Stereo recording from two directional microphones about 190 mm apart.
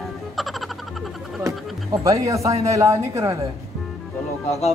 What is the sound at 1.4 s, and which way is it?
Speech, 15° right (ahead or behind).